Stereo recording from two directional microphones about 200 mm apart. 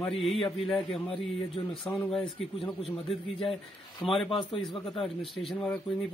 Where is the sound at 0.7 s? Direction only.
Centre (ahead or behind).